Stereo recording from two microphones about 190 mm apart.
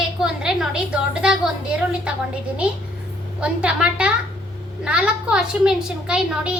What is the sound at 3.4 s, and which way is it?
Child singing, 5° right (ahead or behind).